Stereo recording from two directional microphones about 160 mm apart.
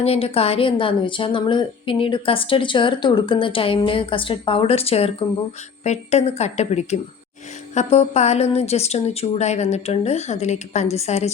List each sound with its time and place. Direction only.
0.0 s a woman's voice: 40° left (ahead or behind)